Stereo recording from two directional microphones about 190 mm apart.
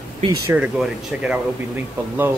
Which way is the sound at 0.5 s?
10° right (ahead or behind).